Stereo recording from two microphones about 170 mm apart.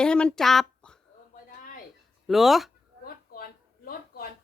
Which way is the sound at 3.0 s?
60° left (ahead or behind).